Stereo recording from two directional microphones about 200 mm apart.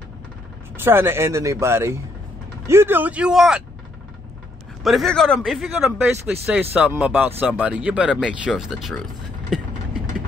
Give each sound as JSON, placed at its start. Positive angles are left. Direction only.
{"t": 0.7, "sound": "speech", "side_deg": -10}
{"t": 4.8, "sound": "speech", "side_deg": 0}